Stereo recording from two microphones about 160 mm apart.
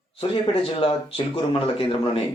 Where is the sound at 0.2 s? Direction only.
35° left (ahead or behind).